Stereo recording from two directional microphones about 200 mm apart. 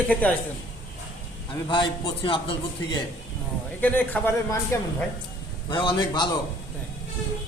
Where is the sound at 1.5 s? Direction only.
25° left (ahead or behind).